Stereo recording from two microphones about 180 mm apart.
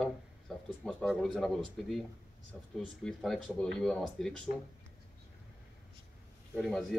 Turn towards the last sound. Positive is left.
turn(degrees=0)  # may be behind; listen again after turning